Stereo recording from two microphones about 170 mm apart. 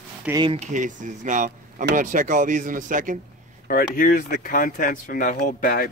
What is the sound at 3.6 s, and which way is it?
Speech, 55° left (ahead or behind).